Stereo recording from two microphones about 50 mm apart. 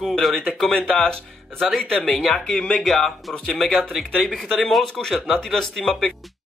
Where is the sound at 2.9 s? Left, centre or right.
Centre.